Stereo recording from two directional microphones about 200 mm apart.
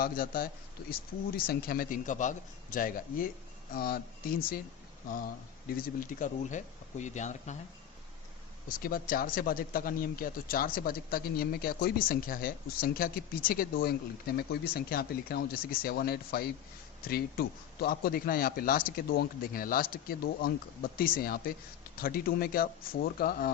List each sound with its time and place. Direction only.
0.0 s speech: 45° left (ahead or behind)
8.7 s speech: 45° left (ahead or behind)